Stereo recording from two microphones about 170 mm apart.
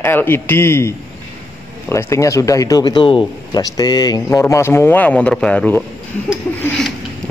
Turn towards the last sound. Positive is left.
turn(degrees=10)  # may be behind; listen again after turning